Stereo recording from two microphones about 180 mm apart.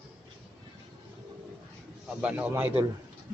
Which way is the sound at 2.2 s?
10° right (ahead or behind).